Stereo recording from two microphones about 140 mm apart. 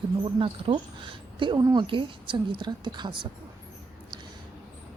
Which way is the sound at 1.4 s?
30° right (ahead or behind).